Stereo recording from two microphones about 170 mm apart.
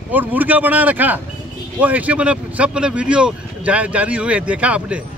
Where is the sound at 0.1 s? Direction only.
10° right (ahead or behind).